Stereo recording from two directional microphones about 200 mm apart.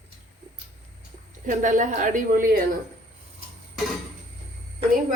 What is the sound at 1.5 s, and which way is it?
Speech, 40° right (ahead or behind).